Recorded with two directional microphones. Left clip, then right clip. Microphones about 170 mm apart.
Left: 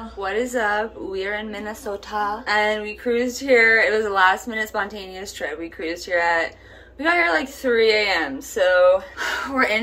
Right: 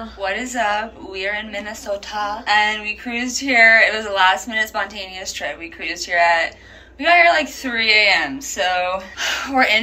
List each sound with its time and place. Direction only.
0.2 s a woman's voice: 40° left (ahead or behind)